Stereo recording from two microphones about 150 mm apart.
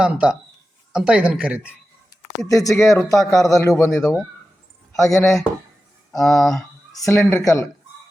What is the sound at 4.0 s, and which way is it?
Speech, centre (ahead or behind).